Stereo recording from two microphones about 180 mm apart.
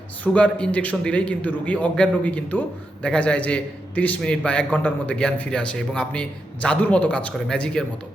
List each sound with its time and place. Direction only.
0.3 s a man's voice: 5° left (ahead or behind)